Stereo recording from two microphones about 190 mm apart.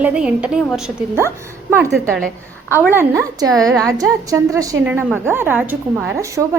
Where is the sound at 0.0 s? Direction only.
5° right (ahead or behind).